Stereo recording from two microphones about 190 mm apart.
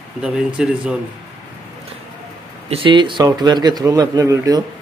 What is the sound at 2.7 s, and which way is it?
Speech, 30° right (ahead or behind).